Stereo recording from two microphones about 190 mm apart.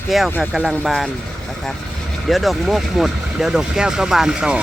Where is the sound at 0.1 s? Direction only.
Centre (ahead or behind).